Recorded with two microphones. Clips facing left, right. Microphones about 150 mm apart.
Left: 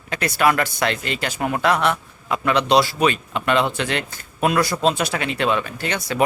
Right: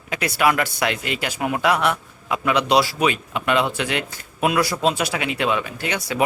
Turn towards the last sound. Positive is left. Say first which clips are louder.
# left 1 dB
turn(degrees=-5)  # may be behind; listen again after turning